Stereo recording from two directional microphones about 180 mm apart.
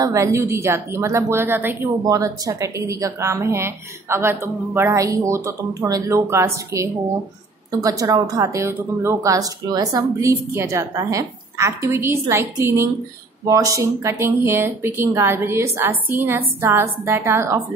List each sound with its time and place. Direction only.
0.0 s a woman's voice: 15° right (ahead or behind)